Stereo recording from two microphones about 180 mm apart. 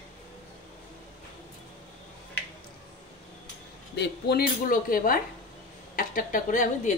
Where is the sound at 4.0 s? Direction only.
60° left (ahead or behind); by 6.9 s 45° left (ahead or behind).